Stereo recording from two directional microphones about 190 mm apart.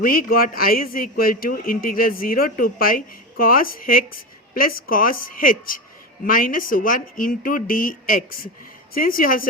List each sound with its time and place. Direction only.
0.0 s a man's voice: 50° left (ahead or behind)